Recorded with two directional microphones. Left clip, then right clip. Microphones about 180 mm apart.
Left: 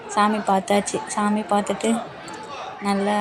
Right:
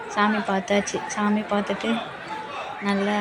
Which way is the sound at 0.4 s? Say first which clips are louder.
Left 3 dB; 15° left (ahead or behind).